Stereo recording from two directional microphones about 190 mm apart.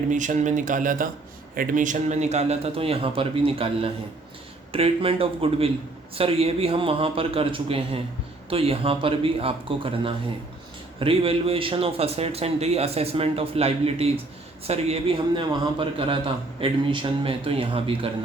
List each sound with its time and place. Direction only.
0.1 s a man's voice: 40° right (ahead or behind)